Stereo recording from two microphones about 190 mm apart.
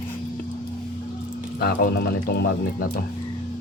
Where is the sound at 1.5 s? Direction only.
55° left (ahead or behind).